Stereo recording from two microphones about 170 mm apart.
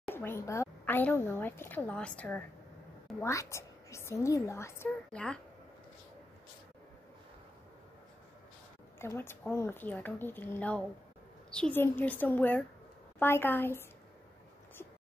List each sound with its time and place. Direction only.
0.1 s a woman's voice: 15° left (ahead or behind)
9.0 s a woman's voice: 15° left (ahead or behind)